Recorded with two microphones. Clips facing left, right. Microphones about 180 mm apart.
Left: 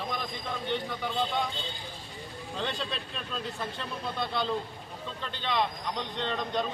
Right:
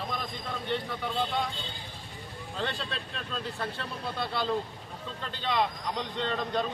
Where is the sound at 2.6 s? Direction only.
Centre (ahead or behind).